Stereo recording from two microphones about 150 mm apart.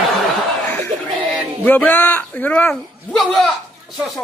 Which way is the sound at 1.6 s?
10° left (ahead or behind).